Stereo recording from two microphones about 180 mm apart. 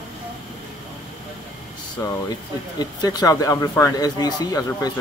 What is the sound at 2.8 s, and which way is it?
Speech, 20° left (ahead or behind).